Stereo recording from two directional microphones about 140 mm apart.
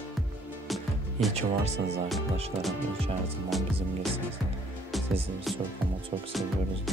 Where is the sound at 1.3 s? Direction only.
50° right (ahead or behind).